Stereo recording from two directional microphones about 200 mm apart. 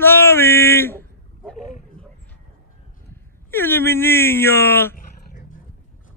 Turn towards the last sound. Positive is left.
turn(degrees=45)  # may be behind; listen again after turning